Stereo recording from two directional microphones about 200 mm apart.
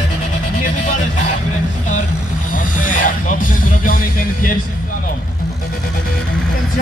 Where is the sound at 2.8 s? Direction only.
40° left (ahead or behind).